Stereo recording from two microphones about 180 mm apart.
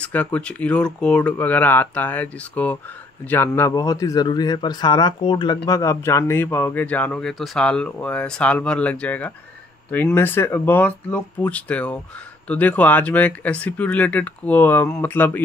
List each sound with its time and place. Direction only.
0.0 s speech: 10° left (ahead or behind)